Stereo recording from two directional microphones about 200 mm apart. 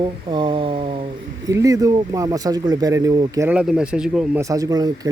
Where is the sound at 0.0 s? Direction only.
25° right (ahead or behind).